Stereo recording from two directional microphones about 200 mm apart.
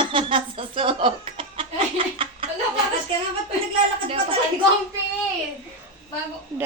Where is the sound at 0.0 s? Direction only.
25° right (ahead or behind).